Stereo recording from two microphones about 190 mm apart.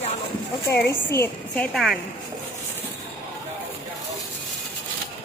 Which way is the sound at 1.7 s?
Centre (ahead or behind).